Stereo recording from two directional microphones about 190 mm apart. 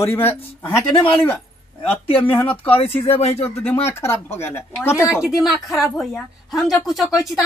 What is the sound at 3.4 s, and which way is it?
Speech, 15° left (ahead or behind).